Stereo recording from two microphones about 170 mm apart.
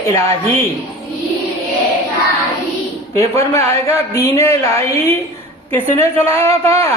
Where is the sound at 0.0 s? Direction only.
15° left (ahead or behind).